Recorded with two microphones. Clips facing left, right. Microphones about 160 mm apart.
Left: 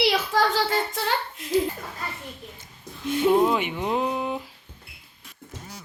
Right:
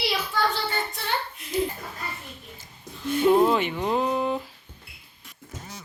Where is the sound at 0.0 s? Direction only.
90° left.